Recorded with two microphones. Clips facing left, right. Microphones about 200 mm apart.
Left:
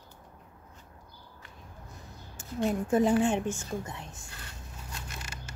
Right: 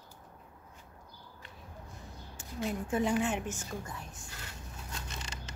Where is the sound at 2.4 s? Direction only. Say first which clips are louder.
Left 6 dB; 40° left (ahead or behind); by 4.1 s 25° left (ahead or behind).